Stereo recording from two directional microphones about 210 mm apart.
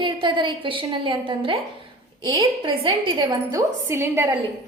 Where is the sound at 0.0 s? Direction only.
25° right (ahead or behind).